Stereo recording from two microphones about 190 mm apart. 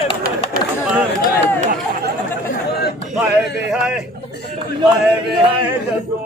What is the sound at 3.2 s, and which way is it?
Speech, 5° right (ahead or behind).